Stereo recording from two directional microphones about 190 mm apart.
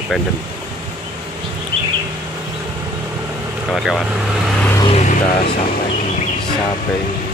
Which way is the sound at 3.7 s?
Centre (ahead or behind).